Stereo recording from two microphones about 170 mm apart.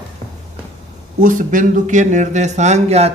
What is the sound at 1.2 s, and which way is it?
Speech, 50° right (ahead or behind).